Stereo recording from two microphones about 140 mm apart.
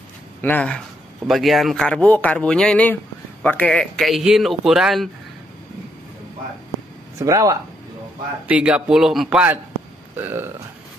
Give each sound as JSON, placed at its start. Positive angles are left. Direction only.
{"t": 0.4, "sound": "speech", "side_deg": 10}
{"t": 7.2, "sound": "speech", "side_deg": -20}
{"t": 8.5, "sound": "speech", "side_deg": -10}
{"t": 10.1, "sound": "speech", "side_deg": -15}